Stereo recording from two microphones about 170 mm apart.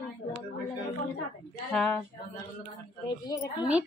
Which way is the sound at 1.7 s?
5° left (ahead or behind).